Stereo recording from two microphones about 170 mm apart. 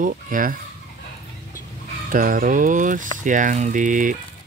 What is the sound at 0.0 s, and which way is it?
Speech, 55° right (ahead or behind).